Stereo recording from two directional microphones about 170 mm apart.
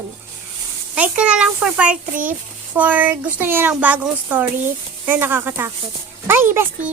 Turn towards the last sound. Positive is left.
turn(degrees=-15)  # may be behind; listen again after turning